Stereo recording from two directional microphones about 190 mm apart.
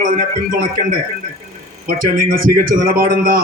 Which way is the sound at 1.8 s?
50° right (ahead or behind).